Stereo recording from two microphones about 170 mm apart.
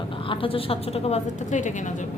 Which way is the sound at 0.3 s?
30° left (ahead or behind).